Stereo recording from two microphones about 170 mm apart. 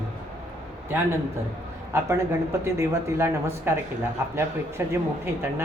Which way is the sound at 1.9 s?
15° right (ahead or behind).